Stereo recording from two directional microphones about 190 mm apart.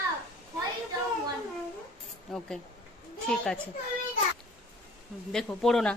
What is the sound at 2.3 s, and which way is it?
Speech, 5° left (ahead or behind).